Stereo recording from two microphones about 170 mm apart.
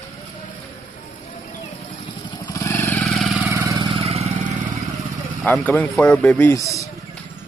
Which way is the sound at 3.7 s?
35° right (ahead or behind).